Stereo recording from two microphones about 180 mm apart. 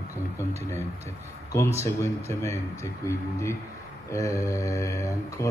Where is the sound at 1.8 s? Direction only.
15° left (ahead or behind).